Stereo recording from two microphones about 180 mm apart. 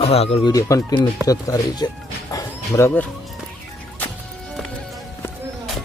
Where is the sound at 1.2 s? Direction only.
20° left (ahead or behind).